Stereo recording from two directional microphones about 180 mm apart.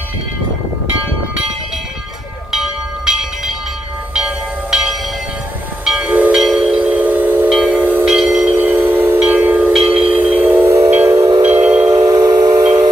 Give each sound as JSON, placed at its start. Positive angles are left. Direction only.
{"t": 2.5, "sound": "train", "side_deg": -5}